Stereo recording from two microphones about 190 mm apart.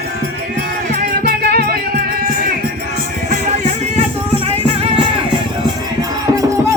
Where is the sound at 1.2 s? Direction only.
55° right (ahead or behind).